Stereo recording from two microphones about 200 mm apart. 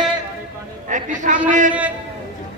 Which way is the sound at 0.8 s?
40° right (ahead or behind).